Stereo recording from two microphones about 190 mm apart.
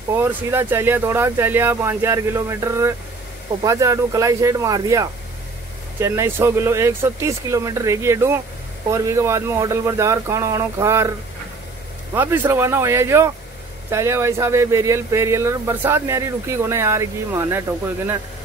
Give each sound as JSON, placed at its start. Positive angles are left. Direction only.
{"t": 0.1, "sound": "speech", "side_deg": -10}
{"t": 12.1, "sound": "speech", "side_deg": -15}